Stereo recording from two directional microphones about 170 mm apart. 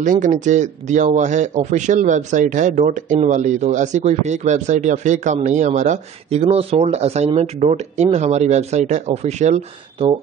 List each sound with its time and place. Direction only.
0.0 s speech: 50° right (ahead or behind)